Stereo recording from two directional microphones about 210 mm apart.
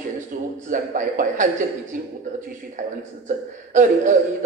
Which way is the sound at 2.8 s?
35° right (ahead or behind).